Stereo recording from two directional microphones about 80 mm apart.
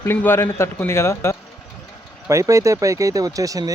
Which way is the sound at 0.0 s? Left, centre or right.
Left.